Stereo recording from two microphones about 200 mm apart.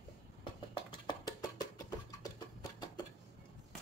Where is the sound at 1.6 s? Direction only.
20° left (ahead or behind).